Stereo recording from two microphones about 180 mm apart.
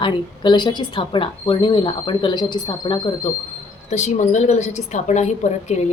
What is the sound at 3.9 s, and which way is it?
A woman's voice, 40° left (ahead or behind).